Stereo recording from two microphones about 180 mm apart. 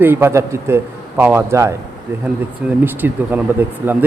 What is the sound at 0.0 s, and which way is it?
Speech, 15° right (ahead or behind).